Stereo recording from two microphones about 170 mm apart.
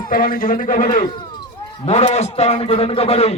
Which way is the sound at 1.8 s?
40° left (ahead or behind).